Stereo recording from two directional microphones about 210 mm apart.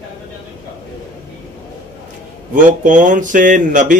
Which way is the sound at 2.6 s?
35° right (ahead or behind).